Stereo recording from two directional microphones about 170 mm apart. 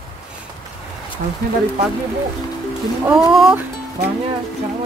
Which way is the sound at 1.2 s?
65° right (ahead or behind).